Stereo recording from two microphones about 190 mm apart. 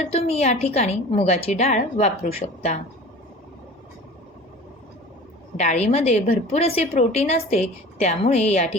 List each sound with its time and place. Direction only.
0.0 s a woman's voice: 30° left (ahead or behind)
5.5 s a woman's voice: 35° left (ahead or behind)